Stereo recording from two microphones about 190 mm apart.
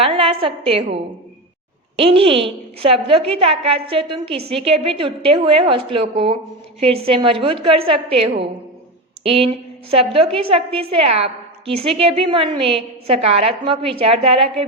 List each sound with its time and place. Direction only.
0.0 s a woman's voice: 30° right (ahead or behind)
2.0 s a woman's voice: 30° right (ahead or behind)